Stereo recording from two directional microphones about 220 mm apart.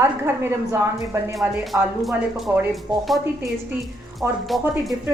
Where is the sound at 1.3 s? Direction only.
Centre (ahead or behind).